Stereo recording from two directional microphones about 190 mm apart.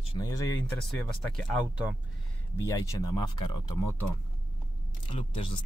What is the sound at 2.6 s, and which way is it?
Speech, 20° left (ahead or behind).